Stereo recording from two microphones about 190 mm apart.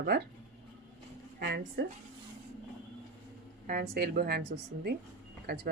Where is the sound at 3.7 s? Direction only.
50° right (ahead or behind).